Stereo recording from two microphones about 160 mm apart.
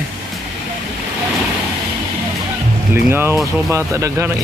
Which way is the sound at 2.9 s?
15° right (ahead or behind).